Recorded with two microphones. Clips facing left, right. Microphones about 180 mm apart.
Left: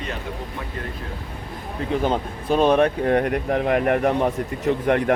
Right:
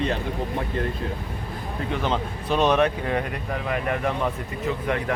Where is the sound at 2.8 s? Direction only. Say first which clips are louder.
Left 5 dB; 55° left (ahead or behind).